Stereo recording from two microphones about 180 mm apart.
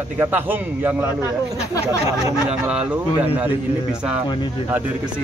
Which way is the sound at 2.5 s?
5° right (ahead or behind).